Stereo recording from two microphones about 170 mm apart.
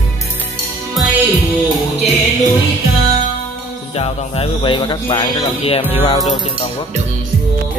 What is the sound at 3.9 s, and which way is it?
Speech, 35° left (ahead or behind).